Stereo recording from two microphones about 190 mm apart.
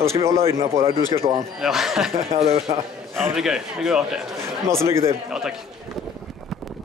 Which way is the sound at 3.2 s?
5° right (ahead or behind).